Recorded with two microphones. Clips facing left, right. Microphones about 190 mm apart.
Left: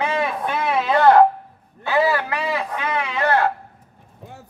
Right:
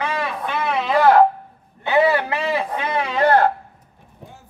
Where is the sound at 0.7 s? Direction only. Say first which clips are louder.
Even; centre (ahead or behind).